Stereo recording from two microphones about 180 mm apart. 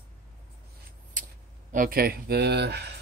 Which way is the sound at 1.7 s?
55° right (ahead or behind).